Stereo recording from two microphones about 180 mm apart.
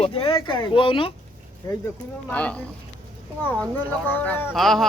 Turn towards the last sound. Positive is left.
turn(degrees=0)  # may be behind; listen again after turning